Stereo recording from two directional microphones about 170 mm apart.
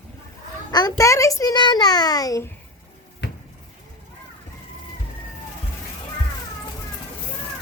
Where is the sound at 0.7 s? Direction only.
20° left (ahead or behind).